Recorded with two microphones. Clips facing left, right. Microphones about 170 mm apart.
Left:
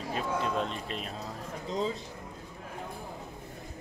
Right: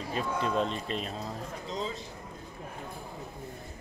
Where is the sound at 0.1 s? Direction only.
Centre (ahead or behind).